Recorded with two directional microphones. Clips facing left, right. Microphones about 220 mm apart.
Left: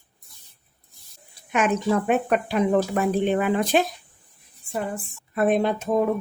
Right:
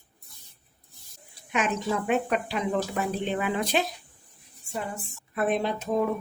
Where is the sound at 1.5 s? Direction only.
50° left (ahead or behind).